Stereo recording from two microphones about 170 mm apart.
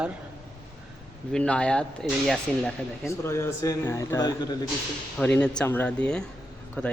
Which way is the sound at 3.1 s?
15° left (ahead or behind).